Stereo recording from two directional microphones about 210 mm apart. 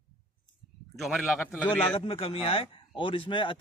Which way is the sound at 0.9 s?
Centre (ahead or behind).